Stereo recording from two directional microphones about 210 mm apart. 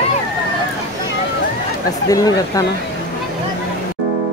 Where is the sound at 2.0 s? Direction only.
15° left (ahead or behind).